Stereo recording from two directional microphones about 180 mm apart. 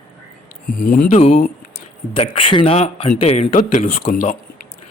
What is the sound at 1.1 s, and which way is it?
Speech, 40° left (ahead or behind).